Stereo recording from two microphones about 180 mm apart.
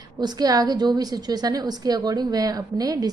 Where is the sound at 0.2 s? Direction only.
20° right (ahead or behind).